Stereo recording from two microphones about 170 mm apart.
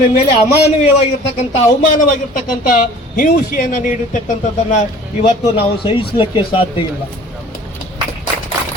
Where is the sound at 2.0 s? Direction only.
50° left (ahead or behind).